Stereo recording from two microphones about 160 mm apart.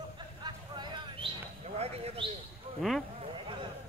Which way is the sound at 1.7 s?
40° right (ahead or behind).